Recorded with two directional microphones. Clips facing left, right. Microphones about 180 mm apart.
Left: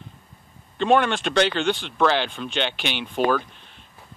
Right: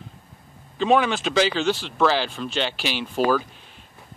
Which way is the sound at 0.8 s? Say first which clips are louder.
Even; centre (ahead or behind).